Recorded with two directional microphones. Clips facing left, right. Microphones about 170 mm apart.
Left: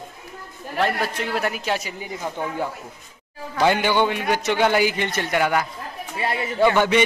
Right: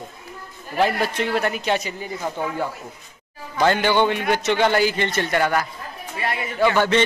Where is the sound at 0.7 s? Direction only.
Centre (ahead or behind).